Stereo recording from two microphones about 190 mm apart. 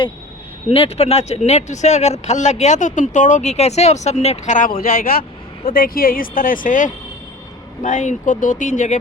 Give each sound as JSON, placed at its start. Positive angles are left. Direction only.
{"t": 0.7, "sound": "speech", "side_deg": 30}